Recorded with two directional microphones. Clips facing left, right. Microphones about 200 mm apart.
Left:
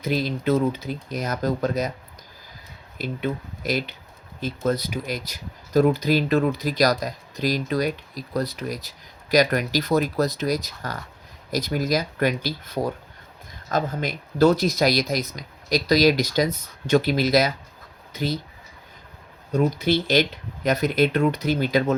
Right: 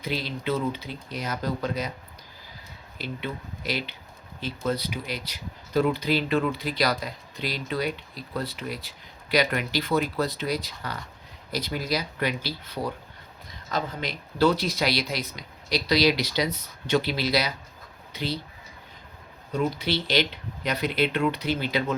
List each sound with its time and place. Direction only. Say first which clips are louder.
0.0 s speech: left 6 dB; 45° left (ahead or behind)
3.0 s speech: left 6 dB; 45° left (ahead or behind)
19.5 s speech: left 5 dB; 45° left (ahead or behind)